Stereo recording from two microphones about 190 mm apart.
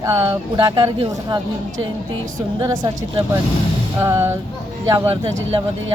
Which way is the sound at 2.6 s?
20° right (ahead or behind).